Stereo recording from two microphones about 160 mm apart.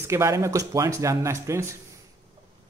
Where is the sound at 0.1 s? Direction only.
20° right (ahead or behind).